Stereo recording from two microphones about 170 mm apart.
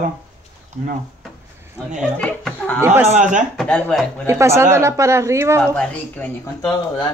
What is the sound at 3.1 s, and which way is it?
Speech, 50° right (ahead or behind).